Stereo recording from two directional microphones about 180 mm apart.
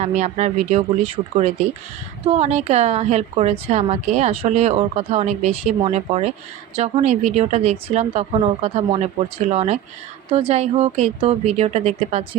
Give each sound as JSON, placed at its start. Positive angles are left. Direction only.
{"t": 0.0, "sound": "a woman's voice", "side_deg": -40}